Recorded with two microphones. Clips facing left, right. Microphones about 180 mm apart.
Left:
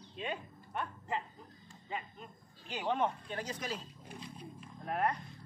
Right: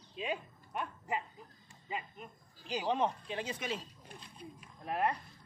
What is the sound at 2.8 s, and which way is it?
Speech, centre (ahead or behind).